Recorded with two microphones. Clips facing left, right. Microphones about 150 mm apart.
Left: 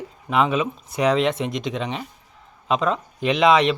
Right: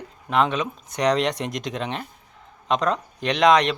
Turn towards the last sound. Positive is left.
turn(degrees=5)  # may be behind; listen again after turning